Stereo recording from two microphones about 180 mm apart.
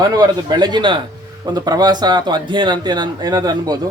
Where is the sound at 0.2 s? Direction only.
25° right (ahead or behind).